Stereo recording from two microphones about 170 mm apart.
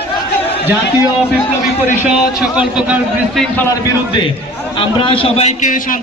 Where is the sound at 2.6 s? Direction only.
5° right (ahead or behind).